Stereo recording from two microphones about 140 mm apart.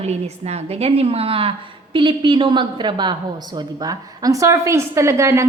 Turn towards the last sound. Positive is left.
turn(degrees=-20)  # may be behind; listen again after turning